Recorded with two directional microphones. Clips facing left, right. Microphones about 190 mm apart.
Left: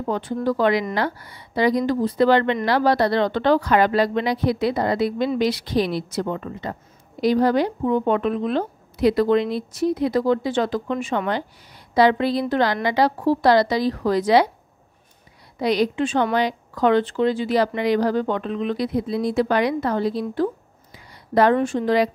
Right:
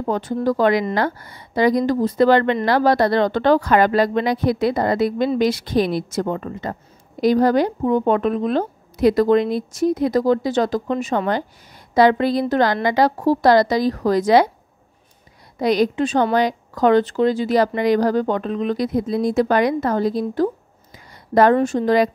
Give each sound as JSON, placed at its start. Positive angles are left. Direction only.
{"t": 0.0, "sound": "a woman's voice", "side_deg": -40}
{"t": 15.6, "sound": "a woman's voice", "side_deg": -45}